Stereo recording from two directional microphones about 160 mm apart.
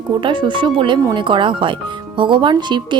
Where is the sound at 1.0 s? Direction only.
20° right (ahead or behind).